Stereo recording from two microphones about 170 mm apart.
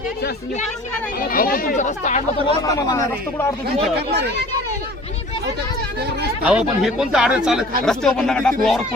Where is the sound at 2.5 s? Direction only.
20° left (ahead or behind).